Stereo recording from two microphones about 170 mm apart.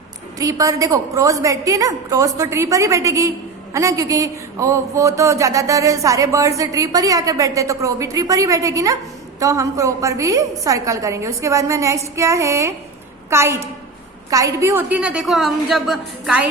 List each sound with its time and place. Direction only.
0.3 s a woman's voice: 20° right (ahead or behind); by 16.5 s 5° right (ahead or behind)